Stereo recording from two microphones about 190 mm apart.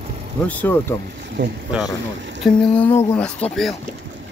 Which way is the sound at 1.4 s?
75° right (ahead or behind).